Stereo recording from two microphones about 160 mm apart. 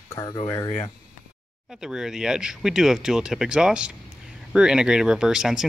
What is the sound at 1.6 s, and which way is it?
Speech, 5° right (ahead or behind).